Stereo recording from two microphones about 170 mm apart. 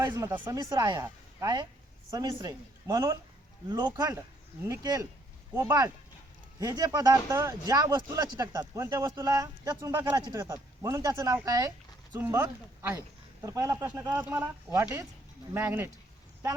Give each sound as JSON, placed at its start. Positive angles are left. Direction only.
{"t": 0.0, "sound": "speech", "side_deg": -20}